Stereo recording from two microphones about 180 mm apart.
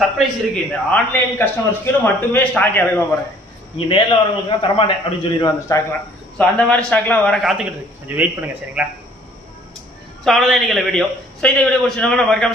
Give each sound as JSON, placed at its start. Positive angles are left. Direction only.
{"t": 0.7, "sound": "a man's voice", "side_deg": 10}
{"t": 3.7, "sound": "a man's voice", "side_deg": 25}
{"t": 6.3, "sound": "a man's voice", "side_deg": 5}
{"t": 10.2, "sound": "a man's voice", "side_deg": 0}